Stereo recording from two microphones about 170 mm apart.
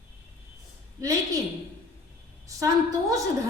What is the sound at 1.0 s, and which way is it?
Speech, 20° right (ahead or behind).